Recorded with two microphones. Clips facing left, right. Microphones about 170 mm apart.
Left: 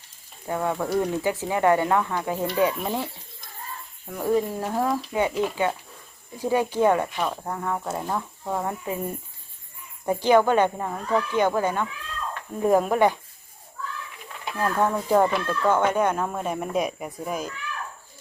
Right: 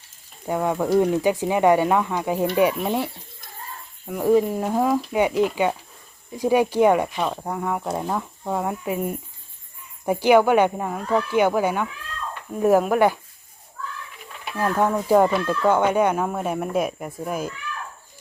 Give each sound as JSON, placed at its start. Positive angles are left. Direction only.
{"t": 0.4, "sound": "speech", "side_deg": -15}
{"t": 4.1, "sound": "speech", "side_deg": -15}
{"t": 14.5, "sound": "speech", "side_deg": -10}